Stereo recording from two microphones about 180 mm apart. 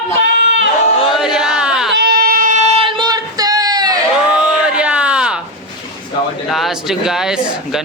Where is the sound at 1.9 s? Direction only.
65° right (ahead or behind); by 3.9 s 20° right (ahead or behind).